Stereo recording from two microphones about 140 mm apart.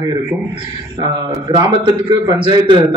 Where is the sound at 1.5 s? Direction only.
30° right (ahead or behind).